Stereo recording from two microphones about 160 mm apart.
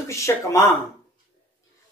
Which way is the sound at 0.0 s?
20° left (ahead or behind).